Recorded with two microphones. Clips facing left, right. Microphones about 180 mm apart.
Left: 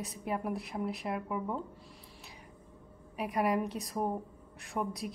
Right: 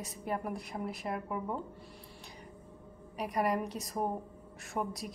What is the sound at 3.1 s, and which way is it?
A woman's voice, centre (ahead or behind).